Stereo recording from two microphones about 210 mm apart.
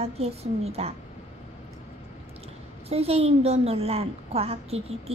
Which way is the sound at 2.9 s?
30° right (ahead or behind).